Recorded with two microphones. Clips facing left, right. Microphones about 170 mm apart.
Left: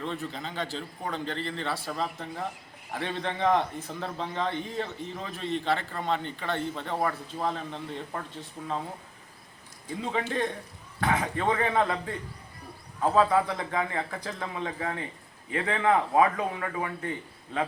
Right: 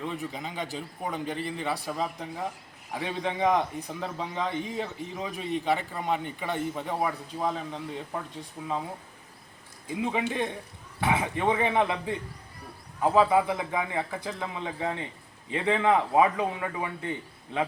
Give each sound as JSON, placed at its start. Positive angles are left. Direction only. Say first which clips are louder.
{"t": 0.0, "sound": "a man's voice", "louder": "even", "side_deg": -10}
{"t": 9.9, "sound": "a man's voice", "louder": "right 1 dB", "side_deg": -15}